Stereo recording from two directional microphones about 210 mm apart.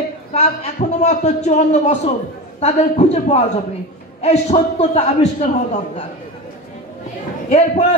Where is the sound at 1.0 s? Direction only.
35° left (ahead or behind).